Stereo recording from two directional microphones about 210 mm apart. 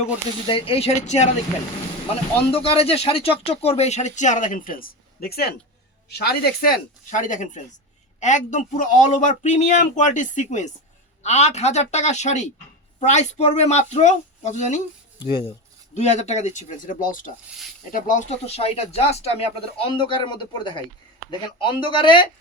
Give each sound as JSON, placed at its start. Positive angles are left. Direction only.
{"t": 0.4, "sound": "speech", "side_deg": 25}
{"t": 2.4, "sound": "speech", "side_deg": 25}
{"t": 15.2, "sound": "speech", "side_deg": 20}
{"t": 16.0, "sound": "speech", "side_deg": 35}